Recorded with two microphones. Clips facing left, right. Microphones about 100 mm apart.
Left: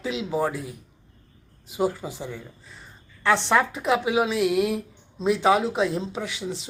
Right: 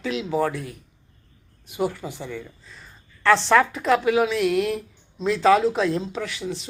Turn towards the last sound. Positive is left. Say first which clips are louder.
# right 1 dB
turn(degrees=20)  # may be behind; listen again after turning